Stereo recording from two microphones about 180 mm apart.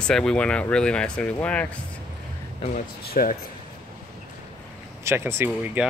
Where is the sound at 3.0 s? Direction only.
50° left (ahead or behind).